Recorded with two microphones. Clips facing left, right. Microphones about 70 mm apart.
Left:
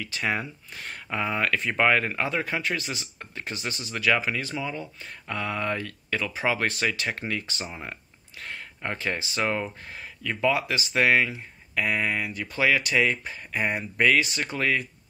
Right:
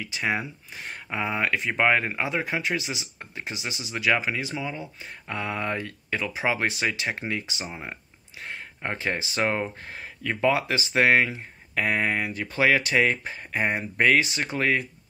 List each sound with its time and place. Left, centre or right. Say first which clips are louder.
0.0 s speech: right 1 dB; centre